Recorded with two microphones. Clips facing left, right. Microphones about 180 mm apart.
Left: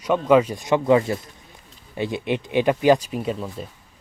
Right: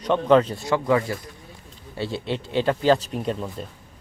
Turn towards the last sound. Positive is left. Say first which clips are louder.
# even
turn(degrees=0)  # may be behind; listen again after turning